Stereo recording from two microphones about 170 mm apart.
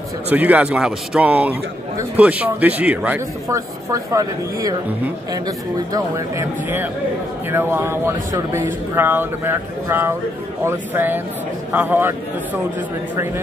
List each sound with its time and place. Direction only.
0.3 s speech: 10° right (ahead or behind)
5.9 s speech: 15° right (ahead or behind)